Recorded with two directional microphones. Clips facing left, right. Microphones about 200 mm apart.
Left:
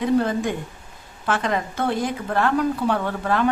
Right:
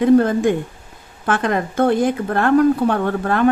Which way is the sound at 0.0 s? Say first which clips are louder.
Right 7 dB; 50° right (ahead or behind).